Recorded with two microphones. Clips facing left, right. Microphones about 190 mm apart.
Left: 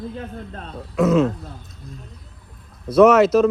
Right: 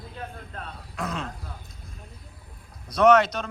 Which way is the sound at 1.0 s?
5° left (ahead or behind).